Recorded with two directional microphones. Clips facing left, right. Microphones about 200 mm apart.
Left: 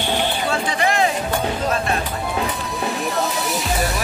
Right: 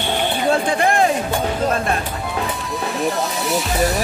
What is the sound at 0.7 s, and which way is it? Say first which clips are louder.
Music: right 3 dB; 50° right (ahead or behind).